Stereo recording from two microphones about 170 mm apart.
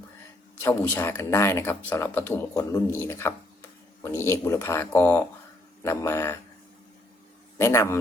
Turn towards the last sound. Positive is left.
turn(degrees=15)  # may be behind; listen again after turning